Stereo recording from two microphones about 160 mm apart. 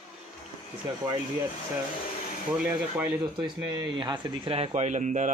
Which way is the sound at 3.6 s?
25° right (ahead or behind).